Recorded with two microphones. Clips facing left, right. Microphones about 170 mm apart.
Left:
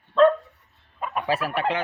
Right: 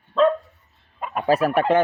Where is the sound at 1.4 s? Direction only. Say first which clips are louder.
Right 7 dB; 45° right (ahead or behind).